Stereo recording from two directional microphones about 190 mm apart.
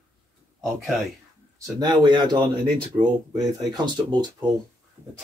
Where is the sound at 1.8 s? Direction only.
20° right (ahead or behind).